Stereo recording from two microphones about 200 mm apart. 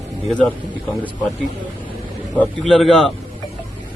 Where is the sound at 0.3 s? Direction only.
5° left (ahead or behind).